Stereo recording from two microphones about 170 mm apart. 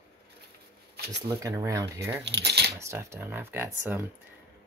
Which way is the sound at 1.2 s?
20° right (ahead or behind).